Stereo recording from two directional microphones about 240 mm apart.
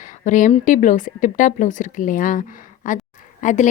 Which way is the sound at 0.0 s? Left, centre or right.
Left.